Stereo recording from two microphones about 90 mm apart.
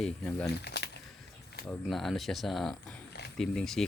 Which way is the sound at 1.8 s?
Centre (ahead or behind).